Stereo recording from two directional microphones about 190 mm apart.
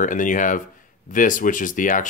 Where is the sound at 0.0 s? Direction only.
45° left (ahead or behind).